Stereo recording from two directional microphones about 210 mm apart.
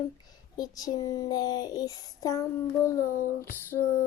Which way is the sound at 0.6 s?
20° left (ahead or behind).